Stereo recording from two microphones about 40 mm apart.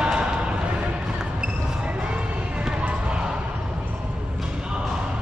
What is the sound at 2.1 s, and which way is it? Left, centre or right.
Basketball bounce, right.